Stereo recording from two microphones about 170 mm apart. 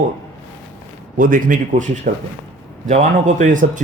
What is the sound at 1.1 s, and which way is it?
A man's voice, 50° right (ahead or behind).